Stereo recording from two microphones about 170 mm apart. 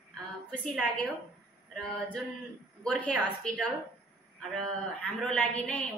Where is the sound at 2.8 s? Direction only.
5° left (ahead or behind).